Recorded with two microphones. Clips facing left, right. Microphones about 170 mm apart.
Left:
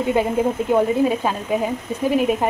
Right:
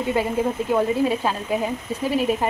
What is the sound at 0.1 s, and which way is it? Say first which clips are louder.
A woman's voice: left 3 dB; 20° left (ahead or behind).